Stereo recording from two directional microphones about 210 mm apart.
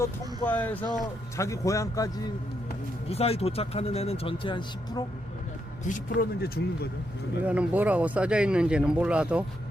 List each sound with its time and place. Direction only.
0.0 s speech: 10° left (ahead or behind)
3.1 s speech: 30° left (ahead or behind)
5.8 s speech: 40° left (ahead or behind)
7.4 s speech: 5° right (ahead or behind)